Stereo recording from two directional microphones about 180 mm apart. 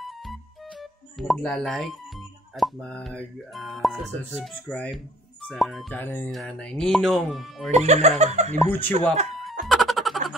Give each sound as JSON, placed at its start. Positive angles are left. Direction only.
{"t": 1.2, "sound": "speech", "side_deg": 0}
{"t": 5.9, "sound": "music", "side_deg": 10}
{"t": 6.3, "sound": "speech", "side_deg": 5}
{"t": 7.7, "sound": "speech", "side_deg": -40}
{"t": 8.6, "sound": "music", "side_deg": 10}